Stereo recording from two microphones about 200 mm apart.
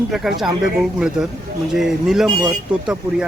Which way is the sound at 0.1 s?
Centre (ahead or behind).